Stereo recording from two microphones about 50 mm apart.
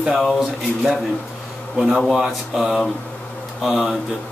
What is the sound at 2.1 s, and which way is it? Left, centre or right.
Mantra, centre.